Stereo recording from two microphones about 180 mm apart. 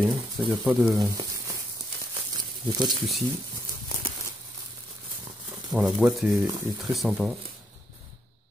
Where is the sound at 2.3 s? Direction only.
25° right (ahead or behind).